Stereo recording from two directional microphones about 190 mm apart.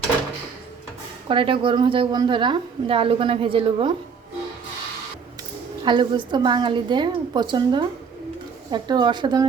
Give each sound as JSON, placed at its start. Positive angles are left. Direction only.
{"t": 1.3, "sound": "a woman's voice", "side_deg": -25}
{"t": 5.8, "sound": "a woman's voice", "side_deg": -25}